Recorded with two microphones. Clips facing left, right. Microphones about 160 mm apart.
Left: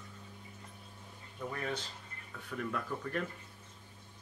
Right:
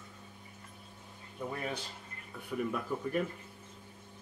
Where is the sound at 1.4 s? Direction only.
15° right (ahead or behind).